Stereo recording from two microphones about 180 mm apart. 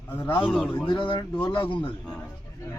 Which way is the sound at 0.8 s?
25° left (ahead or behind).